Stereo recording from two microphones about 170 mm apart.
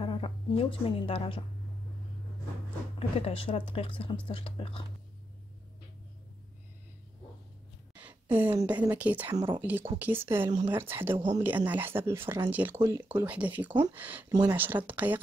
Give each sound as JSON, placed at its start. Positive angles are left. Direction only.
{"t": 0.0, "sound": "a woman's voice", "side_deg": 30}
{"t": 3.0, "sound": "speech", "side_deg": 35}
{"t": 7.9, "sound": "speech", "side_deg": -10}
{"t": 9.3, "sound": "speech", "side_deg": -25}
{"t": 9.6, "sound": "speech", "side_deg": -10}